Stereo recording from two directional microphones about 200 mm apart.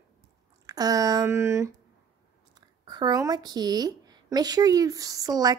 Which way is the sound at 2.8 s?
20° right (ahead or behind).